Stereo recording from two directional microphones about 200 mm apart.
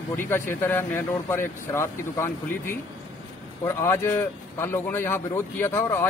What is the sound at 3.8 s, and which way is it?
A man's voice, 15° left (ahead or behind).